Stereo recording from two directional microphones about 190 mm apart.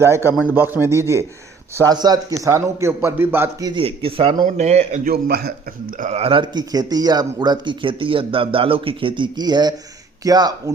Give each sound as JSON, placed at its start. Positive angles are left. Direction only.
{"t": 0.0, "sound": "a man's voice", "side_deg": -15}
{"t": 3.8, "sound": "speech", "side_deg": -30}
{"t": 5.1, "sound": "speech", "side_deg": -55}